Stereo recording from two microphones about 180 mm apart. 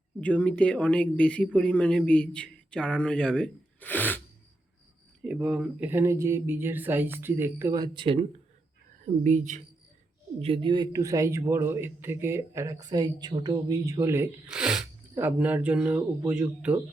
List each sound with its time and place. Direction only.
0.2 s a man's voice: 5° left (ahead or behind)
5.2 s speech: 5° right (ahead or behind); by 8.2 s 30° right (ahead or behind)
9.0 s a woman's voice: 45° right (ahead or behind)
10.4 s speech: 30° right (ahead or behind)
14.4 s a man's voice: 5° right (ahead or behind)